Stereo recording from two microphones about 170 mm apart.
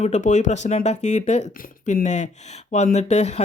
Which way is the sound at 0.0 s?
45° left (ahead or behind).